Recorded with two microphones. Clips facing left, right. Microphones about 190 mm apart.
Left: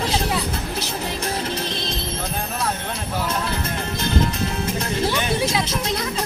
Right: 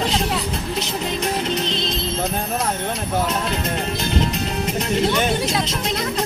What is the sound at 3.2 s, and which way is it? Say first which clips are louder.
Music: right 2 dB; 20° right (ahead or behind).